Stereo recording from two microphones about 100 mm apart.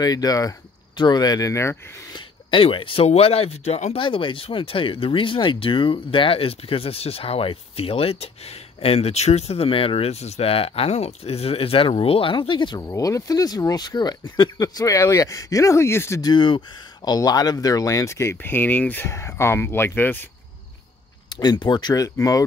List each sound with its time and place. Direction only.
0.0 s speech: 40° left (ahead or behind)
2.1 s speech: 60° left (ahead or behind)
12.7 s speech: 35° left (ahead or behind)
16.2 s speech: 45° left (ahead or behind); by 19.0 s 15° left (ahead or behind)
19.0 s speech: 30° left (ahead or behind)
21.3 s speech: 45° left (ahead or behind)